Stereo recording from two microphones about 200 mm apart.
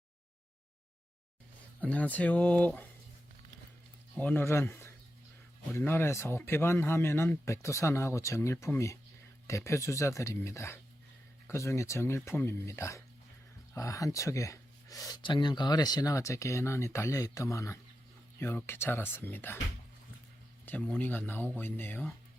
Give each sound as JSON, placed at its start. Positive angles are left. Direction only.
{"t": 1.8, "sound": "speech", "side_deg": 5}
{"t": 4.1, "sound": "speech", "side_deg": 10}
{"t": 20.7, "sound": "speech", "side_deg": 10}